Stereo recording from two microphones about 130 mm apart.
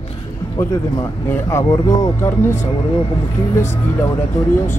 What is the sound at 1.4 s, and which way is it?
Speech, 25° left (ahead or behind).